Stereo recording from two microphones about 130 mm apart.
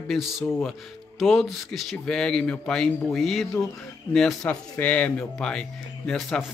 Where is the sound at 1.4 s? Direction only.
Centre (ahead or behind).